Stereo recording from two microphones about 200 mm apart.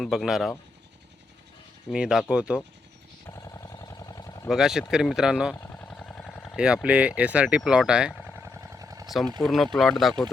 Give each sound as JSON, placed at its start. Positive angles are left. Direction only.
{"t": 0.0, "sound": "speech", "side_deg": 0}
{"t": 1.9, "sound": "speech", "side_deg": -5}
{"t": 3.2, "sound": "a sound", "side_deg": 15}
{"t": 4.4, "sound": "speech", "side_deg": -5}
{"t": 5.5, "sound": "vehicle", "side_deg": 10}
{"t": 6.8, "sound": "speech", "side_deg": -5}
{"t": 7.2, "sound": "vehicle", "side_deg": -5}
{"t": 9.4, "sound": "speech", "side_deg": 0}